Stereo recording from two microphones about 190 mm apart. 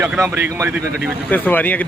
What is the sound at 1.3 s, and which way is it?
Speech, 10° left (ahead or behind).